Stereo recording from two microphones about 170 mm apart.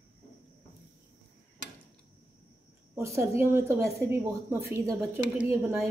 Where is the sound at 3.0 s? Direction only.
15° right (ahead or behind).